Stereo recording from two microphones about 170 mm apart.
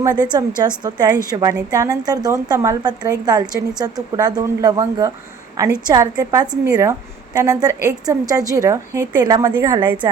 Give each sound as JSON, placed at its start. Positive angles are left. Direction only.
{"t": 0.0, "sound": "a woman's voice", "side_deg": -20}